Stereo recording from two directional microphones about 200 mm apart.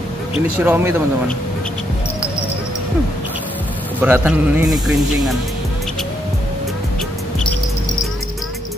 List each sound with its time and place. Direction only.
0.7 s a man's voice: 10° right (ahead or behind)
4.0 s a man's voice: 5° right (ahead or behind)